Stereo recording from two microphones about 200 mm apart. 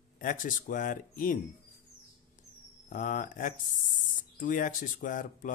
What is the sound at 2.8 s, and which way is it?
Speech, 40° left (ahead or behind).